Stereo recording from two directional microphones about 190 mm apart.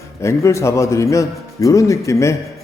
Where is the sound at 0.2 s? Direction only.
15° left (ahead or behind).